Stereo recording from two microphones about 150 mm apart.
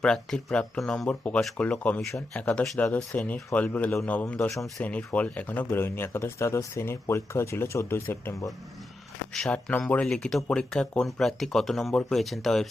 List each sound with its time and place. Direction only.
0.0 s speech: 5° left (ahead or behind)
9.3 s speech: 5° left (ahead or behind)